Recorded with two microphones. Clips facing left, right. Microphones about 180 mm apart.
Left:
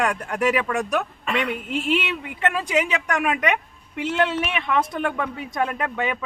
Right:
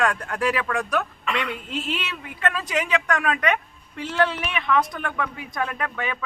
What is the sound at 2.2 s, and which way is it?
A woman's voice, 20° left (ahead or behind).